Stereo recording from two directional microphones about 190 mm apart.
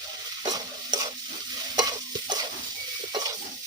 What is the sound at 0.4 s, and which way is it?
Stir, 20° right (ahead or behind).